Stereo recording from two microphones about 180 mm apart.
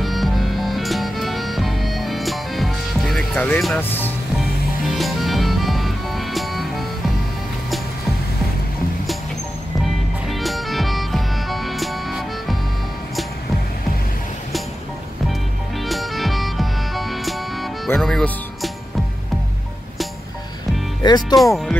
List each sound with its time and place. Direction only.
0.0 s music: centre (ahead or behind)
10.2 s music: centre (ahead or behind)
15.8 s music: centre (ahead or behind)
21.0 s speech: 25° left (ahead or behind)